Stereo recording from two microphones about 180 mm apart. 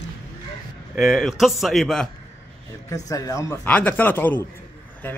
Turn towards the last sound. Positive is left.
turn(degrees=10)  # may be behind; listen again after turning